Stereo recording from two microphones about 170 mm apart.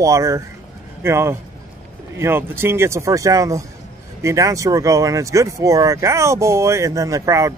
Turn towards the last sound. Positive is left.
turn(degrees=-20)  # may be behind; listen again after turning